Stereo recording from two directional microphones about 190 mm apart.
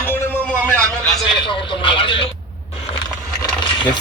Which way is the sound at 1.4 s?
25° left (ahead or behind).